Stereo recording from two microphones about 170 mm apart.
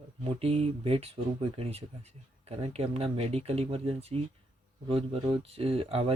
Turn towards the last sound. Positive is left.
turn(degrees=-35)  # may be behind; listen again after turning